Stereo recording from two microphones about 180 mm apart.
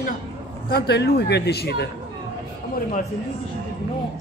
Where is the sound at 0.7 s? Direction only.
65° left (ahead or behind).